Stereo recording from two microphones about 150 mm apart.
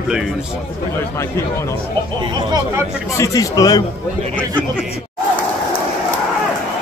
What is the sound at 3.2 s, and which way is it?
Speech, 25° left (ahead or behind).